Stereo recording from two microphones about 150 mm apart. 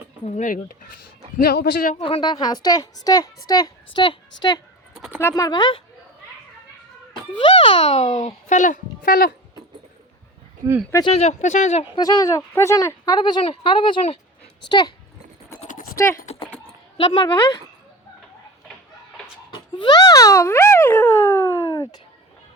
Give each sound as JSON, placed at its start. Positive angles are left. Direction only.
{"t": 0.3, "sound": "speech", "side_deg": 55}
{"t": 1.4, "sound": "a man's voice", "side_deg": 75}
{"t": 2.0, "sound": "a woman's voice", "side_deg": 35}
{"t": 7.4, "sound": "a child's voice", "side_deg": 35}
{"t": 10.6, "sound": "speech", "side_deg": -25}
{"t": 11.0, "sound": "a child's voice", "side_deg": 45}
{"t": 11.9, "sound": "a woman's voice", "side_deg": 25}
{"t": 15.6, "sound": "a sound", "side_deg": 60}
{"t": 16.2, "sound": "typing", "side_deg": 40}
{"t": 17.0, "sound": "speech", "side_deg": 35}
{"t": 19.5, "sound": "speech", "side_deg": 30}